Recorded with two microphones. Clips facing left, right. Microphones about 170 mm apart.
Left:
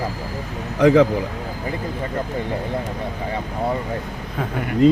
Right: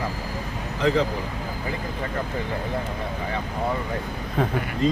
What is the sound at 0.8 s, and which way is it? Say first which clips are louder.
Speech: left 8 dB; 75° left (ahead or behind).